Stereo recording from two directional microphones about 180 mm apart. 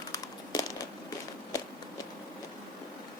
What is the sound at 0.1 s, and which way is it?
Crumpling, 20° left (ahead or behind).